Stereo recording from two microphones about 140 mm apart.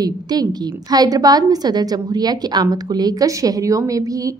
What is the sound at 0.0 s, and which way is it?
A woman's voice, 30° right (ahead or behind).